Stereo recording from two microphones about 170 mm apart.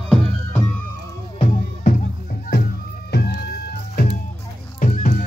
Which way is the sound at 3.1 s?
75° left (ahead or behind).